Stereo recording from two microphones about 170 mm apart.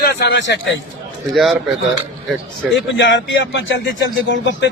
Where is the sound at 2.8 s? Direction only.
90° left.